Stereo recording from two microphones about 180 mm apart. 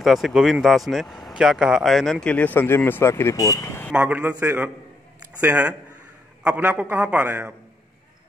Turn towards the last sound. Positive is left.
turn(degrees=-10)  # may be behind; listen again after turning